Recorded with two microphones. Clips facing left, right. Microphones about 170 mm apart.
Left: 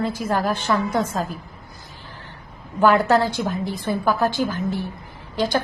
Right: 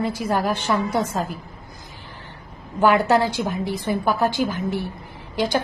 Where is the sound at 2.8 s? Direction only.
15° right (ahead or behind).